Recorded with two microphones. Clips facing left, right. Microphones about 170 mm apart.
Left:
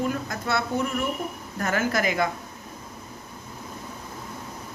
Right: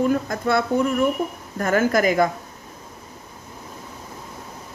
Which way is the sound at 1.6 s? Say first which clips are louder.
Right 6 dB; 50° right (ahead or behind).